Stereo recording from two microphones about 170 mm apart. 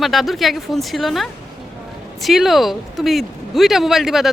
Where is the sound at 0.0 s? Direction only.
Centre (ahead or behind).